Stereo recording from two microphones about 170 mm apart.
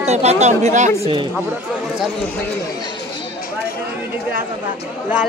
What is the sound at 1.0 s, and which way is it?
Speech, 30° right (ahead or behind).